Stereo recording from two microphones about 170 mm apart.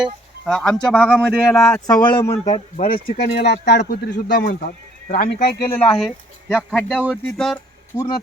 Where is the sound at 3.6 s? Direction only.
70° left (ahead or behind).